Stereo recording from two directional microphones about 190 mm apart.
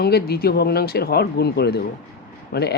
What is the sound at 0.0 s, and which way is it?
Speech, 55° left (ahead or behind).